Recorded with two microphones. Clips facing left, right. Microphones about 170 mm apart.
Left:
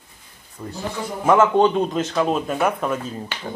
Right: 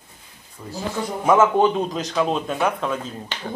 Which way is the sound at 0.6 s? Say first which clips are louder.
Left 3 dB; 5° left (ahead or behind).